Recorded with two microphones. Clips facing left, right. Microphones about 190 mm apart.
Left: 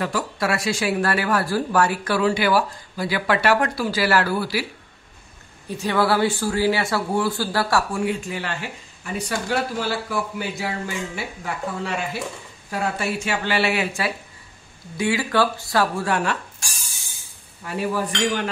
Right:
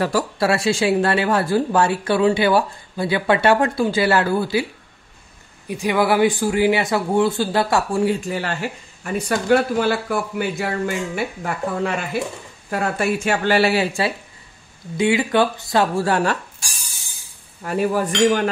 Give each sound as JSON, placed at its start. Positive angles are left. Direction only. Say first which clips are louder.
{"t": 0.0, "sound": "speech", "louder": "right 5 dB", "side_deg": -35}
{"t": 5.7, "sound": "speech", "louder": "right 2 dB", "side_deg": -15}
{"t": 8.0, "sound": "speech", "louder": "right 5 dB", "side_deg": -35}
{"t": 9.0, "sound": "speech", "louder": "right 5 dB", "side_deg": -55}
{"t": 16.0, "sound": "speech", "louder": "right 4 dB", "side_deg": -35}
{"t": 17.6, "sound": "speech", "louder": "right 5 dB", "side_deg": -45}